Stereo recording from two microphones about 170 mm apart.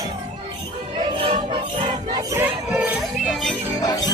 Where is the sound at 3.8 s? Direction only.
20° left (ahead or behind).